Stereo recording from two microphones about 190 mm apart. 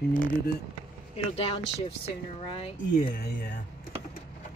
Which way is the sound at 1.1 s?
30° left (ahead or behind).